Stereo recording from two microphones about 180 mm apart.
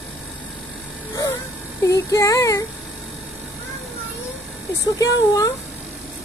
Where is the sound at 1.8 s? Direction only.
20° left (ahead or behind).